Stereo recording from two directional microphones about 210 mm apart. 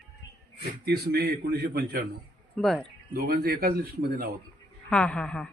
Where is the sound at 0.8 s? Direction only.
50° right (ahead or behind).